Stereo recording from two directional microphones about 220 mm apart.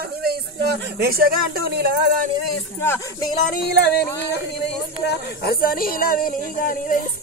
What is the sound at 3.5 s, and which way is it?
Speech, 50° left (ahead or behind).